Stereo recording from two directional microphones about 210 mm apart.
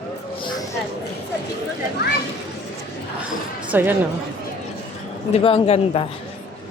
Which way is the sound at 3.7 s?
10° right (ahead or behind).